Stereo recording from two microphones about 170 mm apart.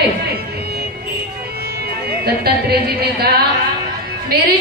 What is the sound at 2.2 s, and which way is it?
A woman's voice, 70° right (ahead or behind).